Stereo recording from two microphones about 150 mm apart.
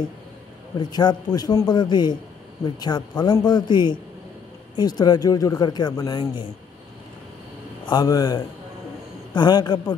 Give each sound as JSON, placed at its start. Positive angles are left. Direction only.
{"t": 0.7, "sound": "speech", "side_deg": 30}
{"t": 7.8, "sound": "speech", "side_deg": 30}